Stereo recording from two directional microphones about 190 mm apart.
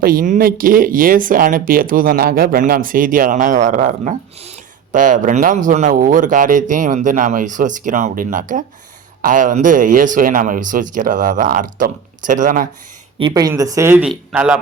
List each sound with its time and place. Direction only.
0.0 s speech: 50° right (ahead or behind)
13.1 s a man's voice: 20° right (ahead or behind); by 14.6 s 5° right (ahead or behind)